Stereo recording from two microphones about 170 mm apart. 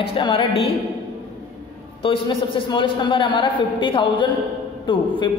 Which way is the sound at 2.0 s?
30° left (ahead or behind).